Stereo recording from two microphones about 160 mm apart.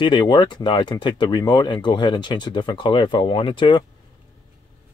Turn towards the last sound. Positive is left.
turn(degrees=30)  # may be behind; listen again after turning